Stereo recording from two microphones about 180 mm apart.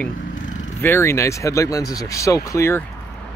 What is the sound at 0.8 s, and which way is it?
Speech, 15° left (ahead or behind).